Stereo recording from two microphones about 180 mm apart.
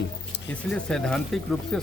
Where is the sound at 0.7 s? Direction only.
5° left (ahead or behind).